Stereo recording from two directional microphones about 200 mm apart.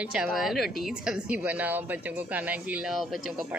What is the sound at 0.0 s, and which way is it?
A woman's voice, 5° right (ahead or behind).